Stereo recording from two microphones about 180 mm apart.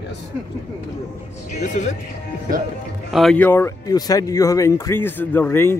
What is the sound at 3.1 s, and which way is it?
Speech, centre (ahead or behind).